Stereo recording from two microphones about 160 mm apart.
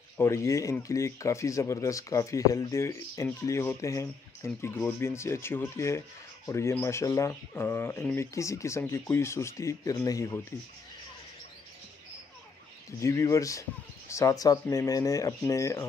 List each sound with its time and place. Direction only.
0.2 s speech: 15° left (ahead or behind)
13.0 s speech: 20° left (ahead or behind)